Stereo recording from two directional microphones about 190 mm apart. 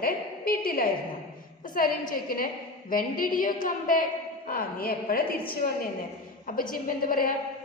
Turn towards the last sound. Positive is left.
turn(degrees=50)  # may be behind; listen again after turning